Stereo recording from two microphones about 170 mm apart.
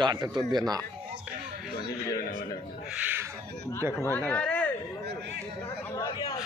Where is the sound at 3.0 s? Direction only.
10° right (ahead or behind).